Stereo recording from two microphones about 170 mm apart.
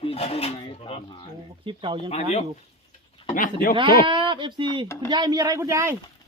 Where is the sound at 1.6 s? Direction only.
30° right (ahead or behind).